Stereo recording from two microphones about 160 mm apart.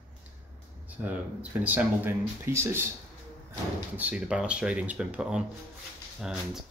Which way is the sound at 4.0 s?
10° right (ahead or behind).